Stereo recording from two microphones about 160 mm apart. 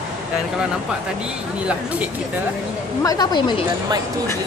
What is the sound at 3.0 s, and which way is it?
Speech, 25° left (ahead or behind).